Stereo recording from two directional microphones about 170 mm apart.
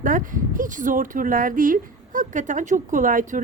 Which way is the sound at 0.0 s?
50° right (ahead or behind).